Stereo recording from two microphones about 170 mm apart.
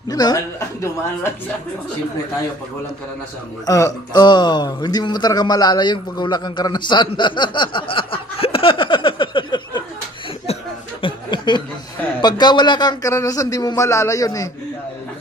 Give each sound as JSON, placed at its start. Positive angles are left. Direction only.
{"t": 0.1, "sound": "a woman's voice", "side_deg": 20}
{"t": 3.7, "sound": "speech", "side_deg": 20}
{"t": 11.0, "sound": "a sound", "side_deg": 30}
{"t": 12.2, "sound": "a man's voice", "side_deg": 25}